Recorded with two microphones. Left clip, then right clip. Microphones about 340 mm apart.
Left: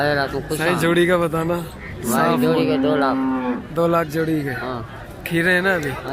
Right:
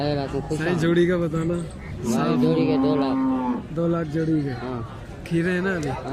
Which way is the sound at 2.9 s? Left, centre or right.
Left.